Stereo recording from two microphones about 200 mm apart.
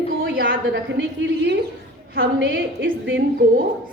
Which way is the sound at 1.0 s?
60° right (ahead or behind).